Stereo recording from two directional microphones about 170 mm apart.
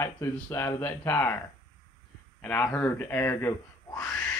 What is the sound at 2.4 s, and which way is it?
Speech, 10° left (ahead or behind).